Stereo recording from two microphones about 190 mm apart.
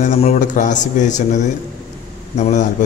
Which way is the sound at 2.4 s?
40° left (ahead or behind).